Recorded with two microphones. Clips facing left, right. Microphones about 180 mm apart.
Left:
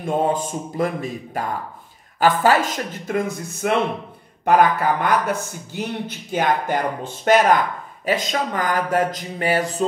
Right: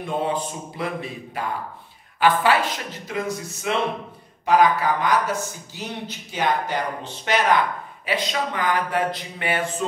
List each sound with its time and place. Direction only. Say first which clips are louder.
0.0 s speech: left 4 dB; 45° left (ahead or behind)